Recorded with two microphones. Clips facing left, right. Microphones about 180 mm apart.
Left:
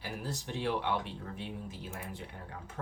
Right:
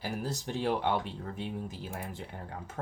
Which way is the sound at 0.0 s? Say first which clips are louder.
Right 4 dB; 40° right (ahead or behind).